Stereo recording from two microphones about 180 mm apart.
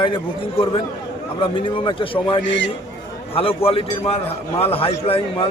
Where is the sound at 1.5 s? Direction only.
30° left (ahead or behind).